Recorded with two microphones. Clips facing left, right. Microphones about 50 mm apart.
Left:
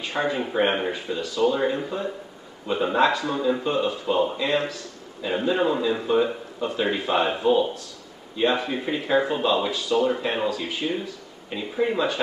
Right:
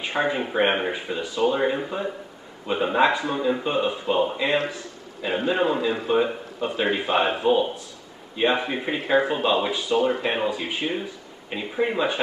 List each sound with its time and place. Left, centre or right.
0.0 s speech: right